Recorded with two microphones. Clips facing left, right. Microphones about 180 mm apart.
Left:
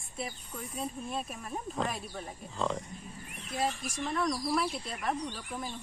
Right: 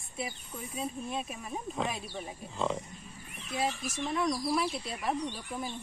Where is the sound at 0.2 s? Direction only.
Centre (ahead or behind).